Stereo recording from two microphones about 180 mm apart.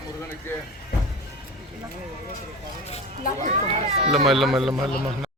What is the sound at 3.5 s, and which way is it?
Speech, 35° right (ahead or behind).